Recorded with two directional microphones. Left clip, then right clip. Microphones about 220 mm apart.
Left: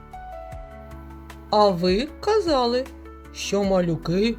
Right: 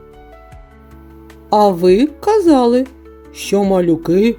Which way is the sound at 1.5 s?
40° right (ahead or behind).